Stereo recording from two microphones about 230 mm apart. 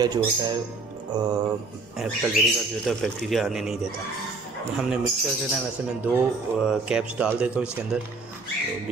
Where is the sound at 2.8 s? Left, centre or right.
Centre.